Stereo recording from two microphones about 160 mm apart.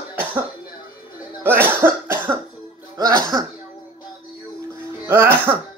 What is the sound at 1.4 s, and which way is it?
Cough, 15° right (ahead or behind).